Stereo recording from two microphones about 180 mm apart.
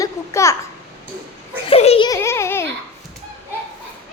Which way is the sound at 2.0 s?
15° left (ahead or behind).